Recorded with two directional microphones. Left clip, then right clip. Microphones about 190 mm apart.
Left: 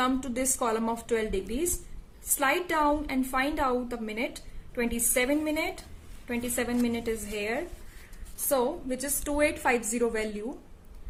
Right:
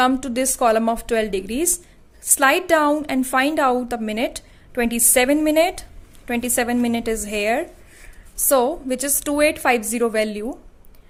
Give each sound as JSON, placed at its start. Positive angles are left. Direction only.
{"t": 0.0, "sound": "a woman's voice", "side_deg": -40}